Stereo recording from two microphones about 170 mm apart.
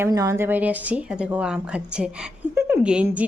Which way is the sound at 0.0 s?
20° right (ahead or behind).